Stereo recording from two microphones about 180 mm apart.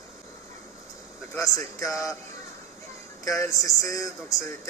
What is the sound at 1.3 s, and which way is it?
Speech, 15° left (ahead or behind).